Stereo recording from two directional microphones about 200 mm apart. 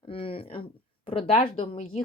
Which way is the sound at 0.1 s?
25° left (ahead or behind).